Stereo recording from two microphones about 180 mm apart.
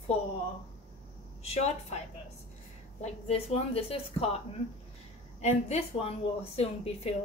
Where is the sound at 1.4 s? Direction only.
35° left (ahead or behind).